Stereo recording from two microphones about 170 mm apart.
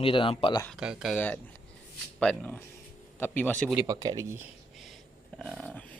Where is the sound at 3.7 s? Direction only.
20° right (ahead or behind).